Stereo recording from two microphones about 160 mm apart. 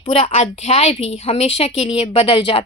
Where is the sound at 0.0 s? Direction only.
40° left (ahead or behind).